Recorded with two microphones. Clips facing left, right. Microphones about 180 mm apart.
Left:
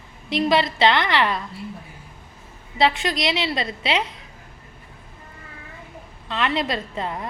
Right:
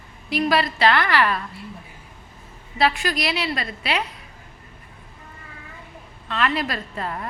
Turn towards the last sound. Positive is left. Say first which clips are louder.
# left 1 dB
turn(degrees=20)  # may be behind; listen again after turning